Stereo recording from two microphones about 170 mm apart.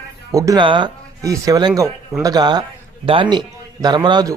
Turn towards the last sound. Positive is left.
turn(degrees=-25)  # may be behind; listen again after turning